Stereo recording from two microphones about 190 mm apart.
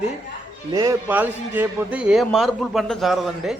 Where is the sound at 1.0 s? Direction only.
10° right (ahead or behind).